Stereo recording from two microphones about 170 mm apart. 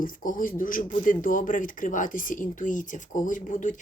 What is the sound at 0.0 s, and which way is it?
Speech, 50° left (ahead or behind).